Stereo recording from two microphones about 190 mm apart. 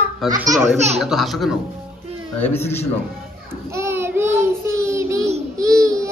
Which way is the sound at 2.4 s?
10° left (ahead or behind).